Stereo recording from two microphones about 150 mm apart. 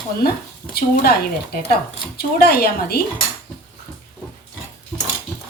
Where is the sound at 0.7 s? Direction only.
90° left.